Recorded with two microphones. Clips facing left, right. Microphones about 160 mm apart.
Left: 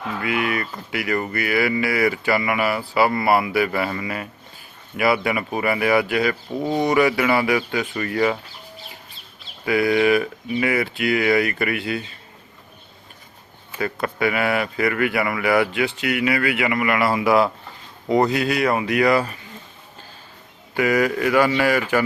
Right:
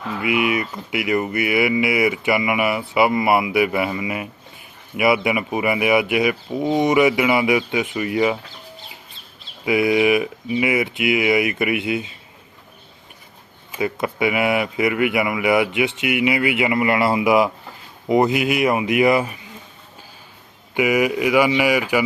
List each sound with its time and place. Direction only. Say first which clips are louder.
0.2 s speech: right 4 dB; 15° right (ahead or behind)
9.6 s speech: right 1 dB; 20° right (ahead or behind)
13.7 s speech: right 2 dB; 15° right (ahead or behind)
20.7 s speech: right 1 dB; 15° right (ahead or behind)